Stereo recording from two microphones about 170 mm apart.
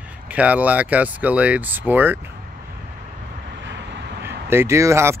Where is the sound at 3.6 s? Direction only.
90° right.